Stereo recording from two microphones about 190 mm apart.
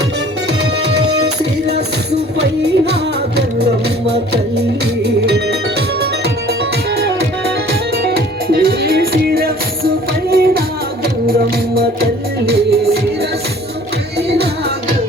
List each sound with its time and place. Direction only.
1.2 s music: 60° right (ahead or behind)
5.0 s organ: 60° right (ahead or behind)
8.0 s music: 55° right (ahead or behind)
14.2 s music: 60° right (ahead or behind)